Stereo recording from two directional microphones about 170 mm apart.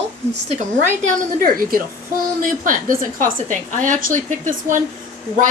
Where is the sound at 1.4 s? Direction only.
60° right (ahead or behind).